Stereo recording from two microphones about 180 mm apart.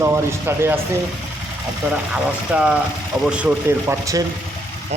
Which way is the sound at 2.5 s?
5° right (ahead or behind).